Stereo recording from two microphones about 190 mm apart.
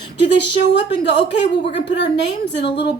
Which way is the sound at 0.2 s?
65° left (ahead or behind).